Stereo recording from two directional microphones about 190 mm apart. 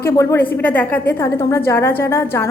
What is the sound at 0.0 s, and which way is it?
A woman's voice, 15° left (ahead or behind).